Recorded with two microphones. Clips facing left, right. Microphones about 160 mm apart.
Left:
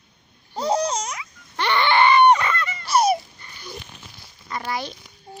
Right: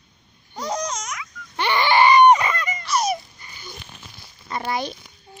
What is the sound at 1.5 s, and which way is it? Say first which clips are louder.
Baby cry: right 1 dB; 10° right (ahead or behind).